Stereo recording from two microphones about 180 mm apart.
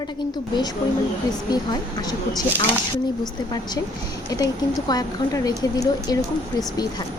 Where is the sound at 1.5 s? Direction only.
20° left (ahead or behind).